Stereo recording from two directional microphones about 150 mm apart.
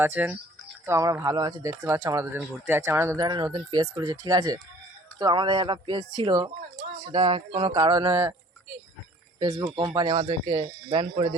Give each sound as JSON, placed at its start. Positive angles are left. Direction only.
{"t": 0.0, "sound": "speech", "side_deg": -10}
{"t": 9.4, "sound": "speech", "side_deg": -25}